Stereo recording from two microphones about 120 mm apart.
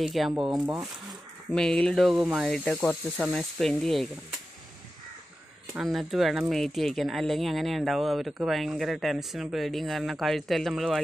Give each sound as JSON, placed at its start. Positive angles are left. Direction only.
{"t": 0.0, "sound": "speech", "side_deg": 0}
{"t": 2.2, "sound": "speech", "side_deg": -10}
{"t": 2.5, "sound": "speech", "side_deg": 5}
{"t": 5.8, "sound": "speech", "side_deg": 0}